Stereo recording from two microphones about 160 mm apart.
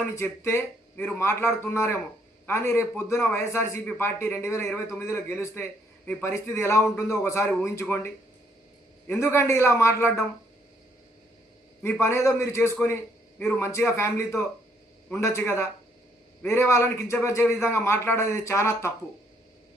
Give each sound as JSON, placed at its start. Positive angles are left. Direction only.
{"t": 0.0, "sound": "a man's voice", "side_deg": 15}
{"t": 9.3, "sound": "a man's voice", "side_deg": 15}
{"t": 11.8, "sound": "a man's voice", "side_deg": 15}